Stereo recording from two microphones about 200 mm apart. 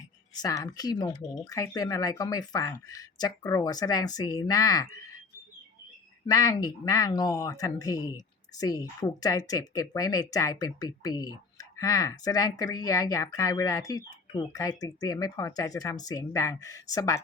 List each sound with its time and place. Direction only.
0.3 s speech: 20° left (ahead or behind)
6.2 s speech: 20° left (ahead or behind)